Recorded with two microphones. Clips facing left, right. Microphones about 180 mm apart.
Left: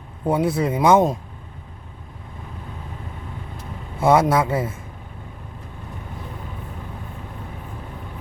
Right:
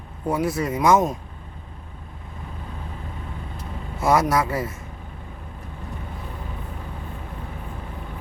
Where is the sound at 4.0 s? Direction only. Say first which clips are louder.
Left 3 dB; 30° left (ahead or behind).